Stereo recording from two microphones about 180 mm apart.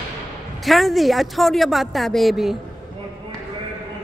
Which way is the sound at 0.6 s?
Centre (ahead or behind).